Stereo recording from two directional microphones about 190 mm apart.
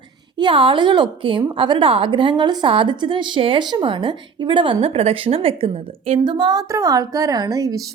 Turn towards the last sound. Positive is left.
turn(degrees=-20)  # may be behind; listen again after turning